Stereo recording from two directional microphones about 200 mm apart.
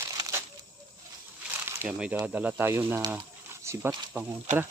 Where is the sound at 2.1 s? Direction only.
10° right (ahead or behind).